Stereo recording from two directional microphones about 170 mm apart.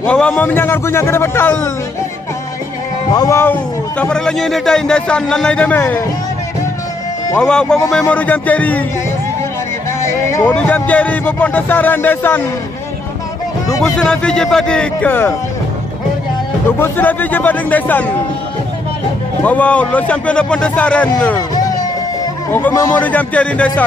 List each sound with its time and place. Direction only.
0.0 s speech: 5° left (ahead or behind)
3.1 s speech: 20° left (ahead or behind)
4.0 s a man's voice: 5° left (ahead or behind)
7.3 s a man's voice: 5° left (ahead or behind)
10.2 s speech: 15° left (ahead or behind)
13.7 s a man's voice: 5° left (ahead or behind)
16.7 s speech: 10° left (ahead or behind)
19.4 s speech: 10° left (ahead or behind)
21.4 s music: 25° left (ahead or behind)
22.2 s speech: 15° left (ahead or behind)